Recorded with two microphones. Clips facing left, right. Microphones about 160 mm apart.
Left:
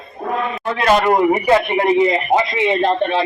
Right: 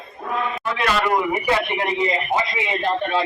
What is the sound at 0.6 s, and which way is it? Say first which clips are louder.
Speech: left 9 dB; 40° left (ahead or behind).